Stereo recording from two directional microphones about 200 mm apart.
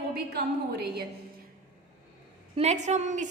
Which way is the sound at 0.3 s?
50° right (ahead or behind).